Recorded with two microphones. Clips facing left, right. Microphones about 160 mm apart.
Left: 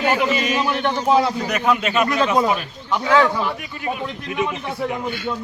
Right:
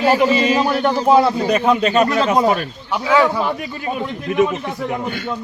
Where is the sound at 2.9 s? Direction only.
10° right (ahead or behind).